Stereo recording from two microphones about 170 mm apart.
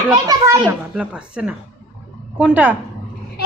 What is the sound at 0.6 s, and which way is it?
Speech, 10° right (ahead or behind).